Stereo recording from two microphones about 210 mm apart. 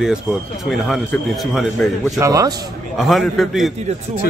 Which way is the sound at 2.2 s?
15° right (ahead or behind).